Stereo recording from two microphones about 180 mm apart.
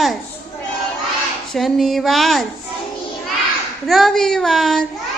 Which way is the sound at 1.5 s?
Centre (ahead or behind).